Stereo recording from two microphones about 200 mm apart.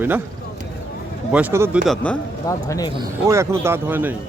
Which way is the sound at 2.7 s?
20° left (ahead or behind).